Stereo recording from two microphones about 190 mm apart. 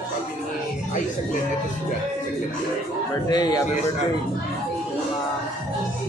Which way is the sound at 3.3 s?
20° left (ahead or behind).